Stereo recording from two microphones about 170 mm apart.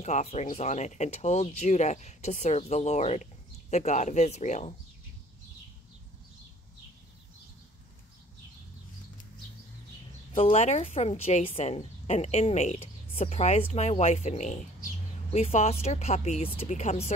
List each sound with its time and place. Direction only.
0.0 s speech: 40° left (ahead or behind)
10.3 s a woman's voice: 35° left (ahead or behind)